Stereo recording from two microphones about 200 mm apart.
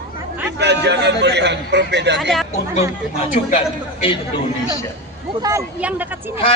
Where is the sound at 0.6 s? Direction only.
60° right (ahead or behind).